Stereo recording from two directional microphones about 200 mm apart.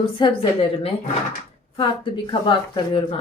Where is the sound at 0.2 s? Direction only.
30° left (ahead or behind).